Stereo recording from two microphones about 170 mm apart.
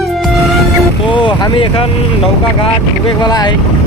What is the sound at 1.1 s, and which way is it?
Vehicle, 30° left (ahead or behind).